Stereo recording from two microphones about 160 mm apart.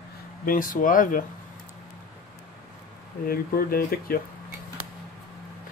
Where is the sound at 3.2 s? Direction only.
70° left (ahead or behind).